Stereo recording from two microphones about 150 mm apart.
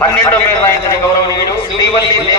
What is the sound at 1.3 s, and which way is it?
Speech, 25° left (ahead or behind).